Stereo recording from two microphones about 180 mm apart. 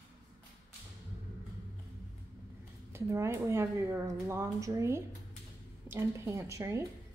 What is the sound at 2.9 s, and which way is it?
A woman's voice, 15° right (ahead or behind).